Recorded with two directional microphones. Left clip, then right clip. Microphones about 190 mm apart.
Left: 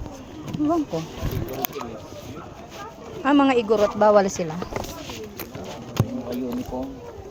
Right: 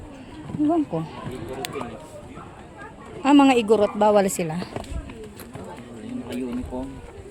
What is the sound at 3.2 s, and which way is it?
A woman's voice, 45° right (ahead or behind).